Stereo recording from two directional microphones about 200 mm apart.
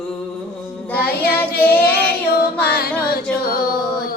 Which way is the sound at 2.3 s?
50° left (ahead or behind).